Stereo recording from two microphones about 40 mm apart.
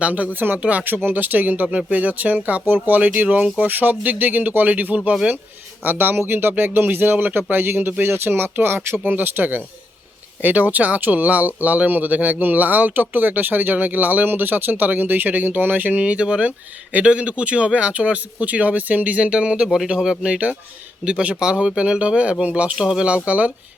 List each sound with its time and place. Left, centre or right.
0.0 s speech: right
0.3 s speech: right
0.6 s speech: right
1.0 s speech: right
1.6 s speech: right
2.6 s speech: right
3.6 s speech: right
5.8 s speech: right
8.1 s speech: right
16.1 s speech: right
19.6 s speech: centre; by 23.5 s right